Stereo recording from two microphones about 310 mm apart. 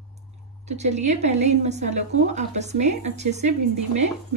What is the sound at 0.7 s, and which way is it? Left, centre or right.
Speech, right.